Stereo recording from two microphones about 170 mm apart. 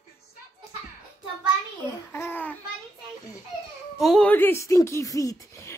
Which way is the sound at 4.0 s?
5° left (ahead or behind).